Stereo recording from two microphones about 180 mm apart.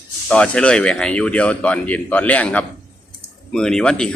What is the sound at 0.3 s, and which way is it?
Speech, 5° left (ahead or behind).